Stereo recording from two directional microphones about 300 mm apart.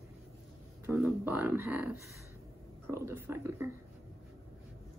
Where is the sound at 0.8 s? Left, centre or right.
Centre.